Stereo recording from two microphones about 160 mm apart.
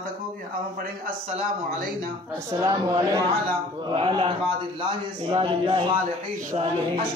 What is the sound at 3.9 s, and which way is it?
Speech, 35° right (ahead or behind).